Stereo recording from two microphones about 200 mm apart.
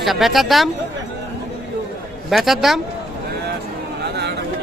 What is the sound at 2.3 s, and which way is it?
Speech, centre (ahead or behind).